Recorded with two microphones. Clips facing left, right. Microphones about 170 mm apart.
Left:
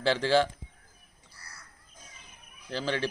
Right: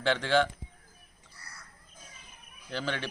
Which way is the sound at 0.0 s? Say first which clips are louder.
Left 2 dB; 35° left (ahead or behind).